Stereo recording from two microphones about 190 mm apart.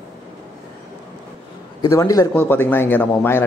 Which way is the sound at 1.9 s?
15° left (ahead or behind).